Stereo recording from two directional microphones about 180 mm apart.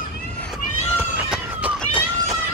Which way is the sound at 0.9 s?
10° right (ahead or behind).